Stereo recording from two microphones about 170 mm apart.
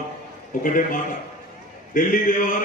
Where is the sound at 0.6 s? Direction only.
50° left (ahead or behind).